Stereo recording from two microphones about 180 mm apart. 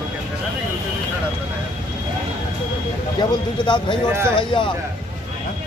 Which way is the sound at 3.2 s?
25° left (ahead or behind).